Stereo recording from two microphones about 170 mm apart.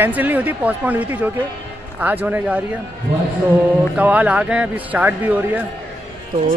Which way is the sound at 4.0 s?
10° right (ahead or behind).